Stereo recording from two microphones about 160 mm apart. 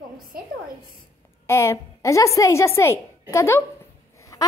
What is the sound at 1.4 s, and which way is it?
A woman's voice, 15° left (ahead or behind).